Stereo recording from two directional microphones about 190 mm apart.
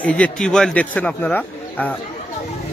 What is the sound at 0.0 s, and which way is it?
A man's voice, 5° left (ahead or behind).